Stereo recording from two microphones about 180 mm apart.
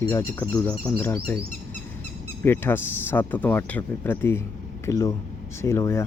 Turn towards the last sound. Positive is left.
turn(degrees=15)  # may be behind; listen again after turning